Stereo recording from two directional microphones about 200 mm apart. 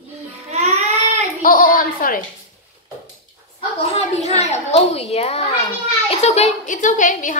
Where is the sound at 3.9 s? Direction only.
35° left (ahead or behind).